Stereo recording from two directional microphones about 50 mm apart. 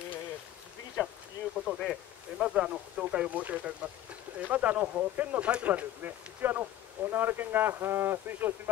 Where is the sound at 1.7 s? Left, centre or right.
Centre.